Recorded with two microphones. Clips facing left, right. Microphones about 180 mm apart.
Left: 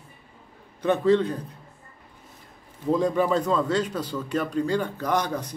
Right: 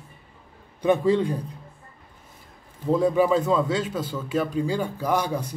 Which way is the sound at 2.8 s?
5° right (ahead or behind).